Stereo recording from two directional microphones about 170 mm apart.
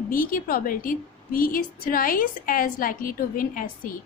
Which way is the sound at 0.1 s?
55° left (ahead or behind).